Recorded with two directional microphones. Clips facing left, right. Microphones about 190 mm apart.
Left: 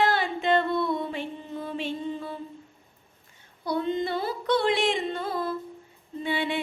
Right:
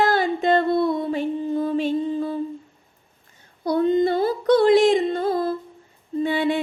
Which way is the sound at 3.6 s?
45° right (ahead or behind).